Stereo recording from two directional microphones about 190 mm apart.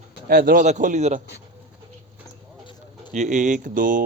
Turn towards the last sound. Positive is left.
turn(degrees=-45)  # may be behind; listen again after turning